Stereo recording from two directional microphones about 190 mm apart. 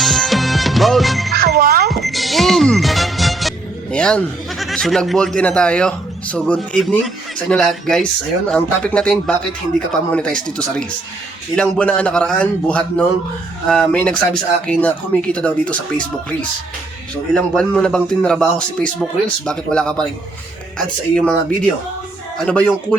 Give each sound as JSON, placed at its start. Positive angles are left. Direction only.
{"t": 0.0, "sound": "music", "side_deg": 0}
{"t": 1.3, "sound": "music", "side_deg": -55}
{"t": 1.9, "sound": "music", "side_deg": 0}
{"t": 3.9, "sound": "a man's voice", "side_deg": 5}
{"t": 17.3, "sound": "a man's voice", "side_deg": 5}
{"t": 22.4, "sound": "a man's voice", "side_deg": 5}